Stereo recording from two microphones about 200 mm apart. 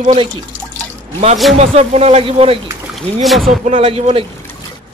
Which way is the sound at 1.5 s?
30° right (ahead or behind).